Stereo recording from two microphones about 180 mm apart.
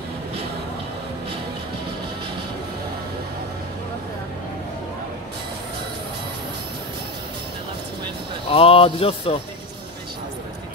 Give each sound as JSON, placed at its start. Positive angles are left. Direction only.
{"t": 8.5, "sound": "speech", "side_deg": 30}